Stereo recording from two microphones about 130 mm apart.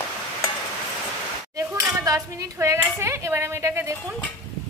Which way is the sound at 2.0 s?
25° right (ahead or behind).